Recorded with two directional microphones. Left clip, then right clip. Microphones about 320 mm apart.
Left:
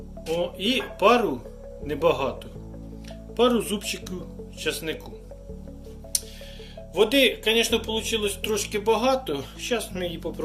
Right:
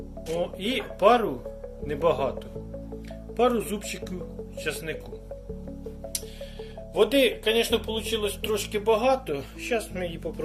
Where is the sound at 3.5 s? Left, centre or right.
Right.